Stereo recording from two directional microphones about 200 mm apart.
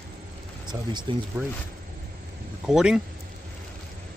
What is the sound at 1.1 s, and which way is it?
Speech, 25° right (ahead or behind).